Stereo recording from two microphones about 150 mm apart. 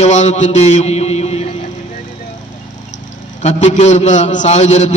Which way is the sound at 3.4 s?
50° left (ahead or behind).